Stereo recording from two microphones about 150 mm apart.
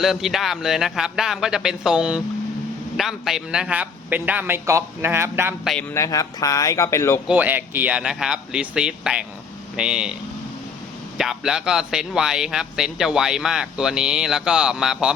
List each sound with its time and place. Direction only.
0.0 s a man's voice: centre (ahead or behind); by 5.5 s 15° right (ahead or behind)
5.9 s speech: 20° left (ahead or behind)
7.3 s a man's voice: 10° right (ahead or behind)
11.2 s speech: 5° right (ahead or behind)